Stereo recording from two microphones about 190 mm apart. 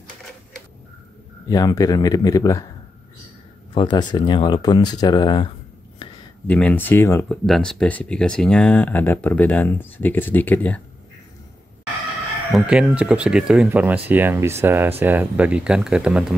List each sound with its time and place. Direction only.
1.5 s speech: 20° left (ahead or behind)
3.7 s speech: 20° left (ahead or behind)
6.4 s speech: 10° left (ahead or behind)
7.4 s speech: centre (ahead or behind)
12.5 s speech: centre (ahead or behind)